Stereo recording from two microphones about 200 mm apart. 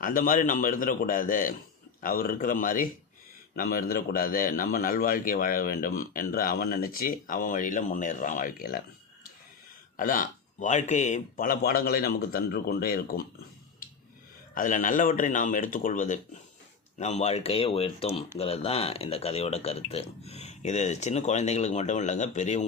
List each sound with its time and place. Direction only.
0.0 s a man's voice: 45° left (ahead or behind)
10.0 s a man's voice: 45° left (ahead or behind)
14.5 s speech: 40° left (ahead or behind)